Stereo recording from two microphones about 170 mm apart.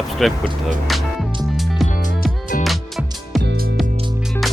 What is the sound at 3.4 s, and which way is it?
Music, 75° right (ahead or behind).